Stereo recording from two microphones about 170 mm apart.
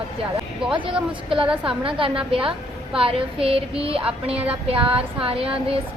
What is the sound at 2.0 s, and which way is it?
Child singing, 30° right (ahead or behind).